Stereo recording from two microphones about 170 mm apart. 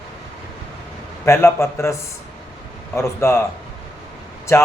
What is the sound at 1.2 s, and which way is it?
A man's voice, 15° left (ahead or behind).